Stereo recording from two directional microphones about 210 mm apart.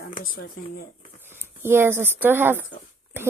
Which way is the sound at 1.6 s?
10° right (ahead or behind).